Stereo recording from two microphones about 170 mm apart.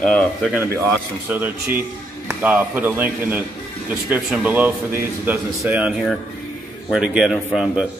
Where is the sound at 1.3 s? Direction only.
10° right (ahead or behind).